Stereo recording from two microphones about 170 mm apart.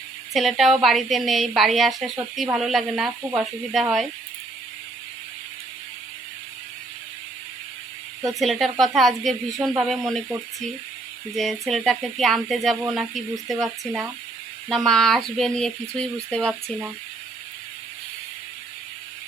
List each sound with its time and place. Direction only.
0.3 s speech: centre (ahead or behind)
8.4 s speech: centre (ahead or behind)
11.3 s speech: centre (ahead or behind)